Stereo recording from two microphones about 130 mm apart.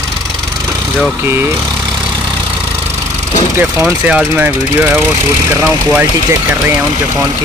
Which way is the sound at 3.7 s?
5° right (ahead or behind).